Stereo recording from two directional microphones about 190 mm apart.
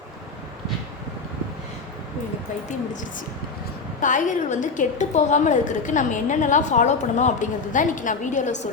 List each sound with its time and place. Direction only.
2.6 s a woman's voice: 40° left (ahead or behind)